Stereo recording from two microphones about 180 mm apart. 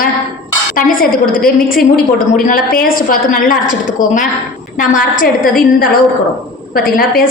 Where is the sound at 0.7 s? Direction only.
50° left (ahead or behind).